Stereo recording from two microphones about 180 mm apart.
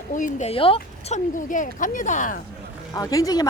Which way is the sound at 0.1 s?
45° left (ahead or behind).